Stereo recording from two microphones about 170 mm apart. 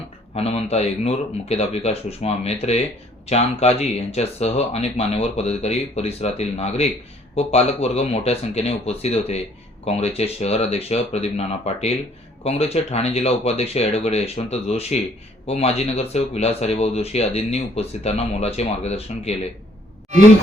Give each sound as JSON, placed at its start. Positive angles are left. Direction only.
{"t": 0.3, "sound": "speech", "side_deg": 40}